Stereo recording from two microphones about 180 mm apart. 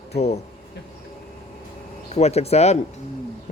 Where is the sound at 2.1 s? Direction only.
35° left (ahead or behind).